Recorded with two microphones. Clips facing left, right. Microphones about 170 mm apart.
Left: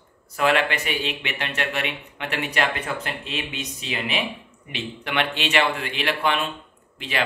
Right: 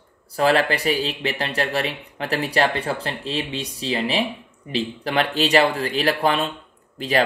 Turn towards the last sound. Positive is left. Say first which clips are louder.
# right 8 dB
turn(degrees=-40)  # may be behind; listen again after turning